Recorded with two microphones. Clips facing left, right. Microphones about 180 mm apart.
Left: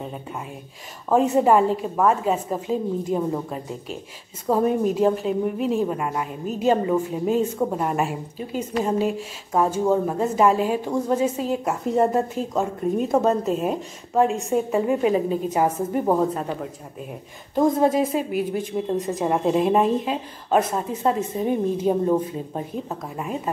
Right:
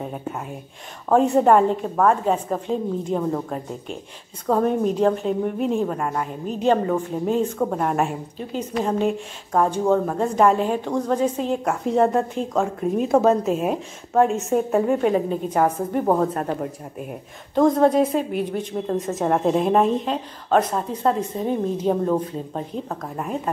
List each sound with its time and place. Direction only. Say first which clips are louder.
1.1 s a woman's voice: right 1 dB; centre (ahead or behind)
17.6 s a woman's voice: right 2 dB; 5° left (ahead or behind)
23.1 s a woman's voice: right 2 dB; 5° left (ahead or behind)